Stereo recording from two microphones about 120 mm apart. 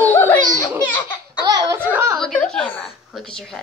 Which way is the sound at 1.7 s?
15° right (ahead or behind).